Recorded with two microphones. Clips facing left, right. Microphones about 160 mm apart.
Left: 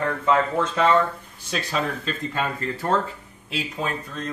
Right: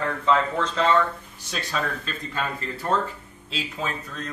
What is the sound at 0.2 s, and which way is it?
Speech, 10° left (ahead or behind).